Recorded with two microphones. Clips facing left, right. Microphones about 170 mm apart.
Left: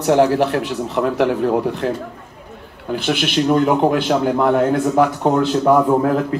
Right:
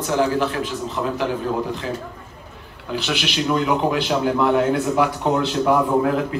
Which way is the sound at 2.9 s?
50° left (ahead or behind).